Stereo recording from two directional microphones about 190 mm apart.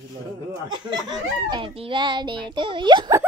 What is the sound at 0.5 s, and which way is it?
A child's voice, 20° right (ahead or behind).